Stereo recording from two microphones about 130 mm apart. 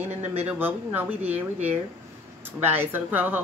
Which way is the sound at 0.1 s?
55° right (ahead or behind).